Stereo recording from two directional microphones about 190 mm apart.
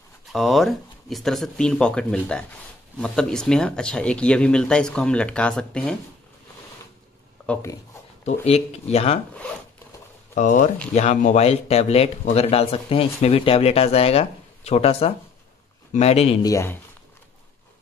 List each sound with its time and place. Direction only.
0.3 s speech: centre (ahead or behind)
7.4 s a sound: 5° left (ahead or behind)
8.3 s a man's voice: 35° left (ahead or behind)
10.3 s a man's voice: 45° left (ahead or behind)
16.4 s speech: 15° left (ahead or behind)